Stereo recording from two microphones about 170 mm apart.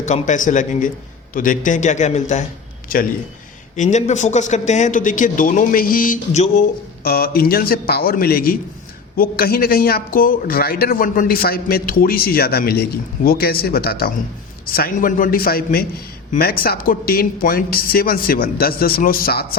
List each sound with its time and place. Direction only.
0.0 s speech: 45° left (ahead or behind)
2.9 s speech: 55° left (ahead or behind)
3.8 s speech: 45° left (ahead or behind)
7.0 s speech: 65° left (ahead or behind)